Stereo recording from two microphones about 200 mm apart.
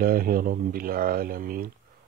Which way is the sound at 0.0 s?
45° right (ahead or behind).